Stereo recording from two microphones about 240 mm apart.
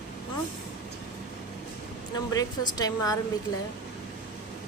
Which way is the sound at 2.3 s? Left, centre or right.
Centre.